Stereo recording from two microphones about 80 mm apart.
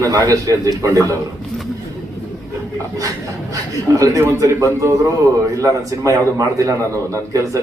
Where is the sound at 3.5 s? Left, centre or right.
Right.